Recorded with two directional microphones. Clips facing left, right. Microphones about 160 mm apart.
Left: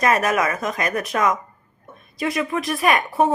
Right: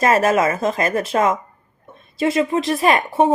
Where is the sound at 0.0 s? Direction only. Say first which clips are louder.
Right 4 dB; 30° right (ahead or behind).